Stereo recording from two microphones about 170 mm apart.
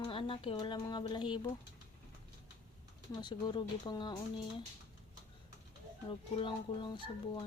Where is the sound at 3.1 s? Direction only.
25° left (ahead or behind).